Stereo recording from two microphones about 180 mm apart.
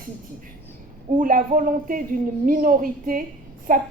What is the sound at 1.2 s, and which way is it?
A woman's voice, 50° right (ahead or behind).